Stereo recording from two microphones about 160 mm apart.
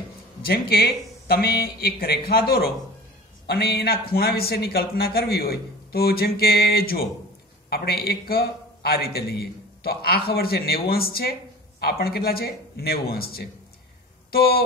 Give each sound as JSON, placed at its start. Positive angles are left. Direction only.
{"t": 0.5, "sound": "speech", "side_deg": 75}
{"t": 3.4, "sound": "speech", "side_deg": 85}